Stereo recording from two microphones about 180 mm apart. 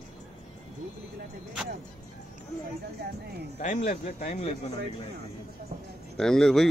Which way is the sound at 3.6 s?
45° left (ahead or behind).